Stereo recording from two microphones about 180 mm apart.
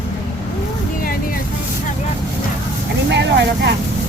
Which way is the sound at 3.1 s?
75° right (ahead or behind).